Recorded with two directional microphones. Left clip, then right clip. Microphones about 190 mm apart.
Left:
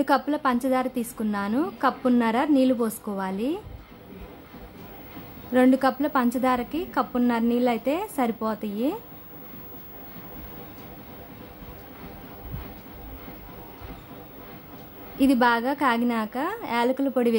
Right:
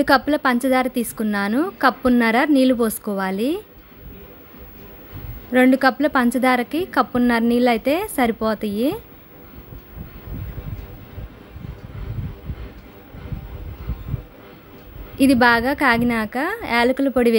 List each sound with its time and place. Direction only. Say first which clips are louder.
0.0 s a woman's voice: right 6 dB; 15° right (ahead or behind)
5.5 s a woman's voice: right 5 dB; 15° right (ahead or behind)
15.1 s a woman's voice: right 6 dB; 15° right (ahead or behind)